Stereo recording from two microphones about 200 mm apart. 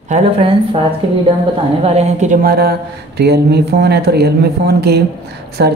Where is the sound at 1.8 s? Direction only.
30° right (ahead or behind).